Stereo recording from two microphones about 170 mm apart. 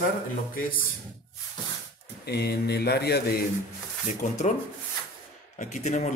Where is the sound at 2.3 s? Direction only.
70° left (ahead or behind).